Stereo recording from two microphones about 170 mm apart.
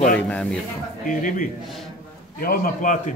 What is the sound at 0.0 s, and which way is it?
Speech, 5° left (ahead or behind).